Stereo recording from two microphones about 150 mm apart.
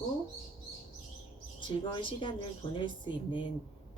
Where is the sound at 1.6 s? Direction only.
30° left (ahead or behind).